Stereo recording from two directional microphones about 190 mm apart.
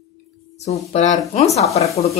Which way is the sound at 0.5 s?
35° left (ahead or behind).